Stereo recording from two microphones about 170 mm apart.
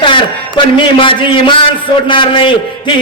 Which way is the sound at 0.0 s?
30° left (ahead or behind).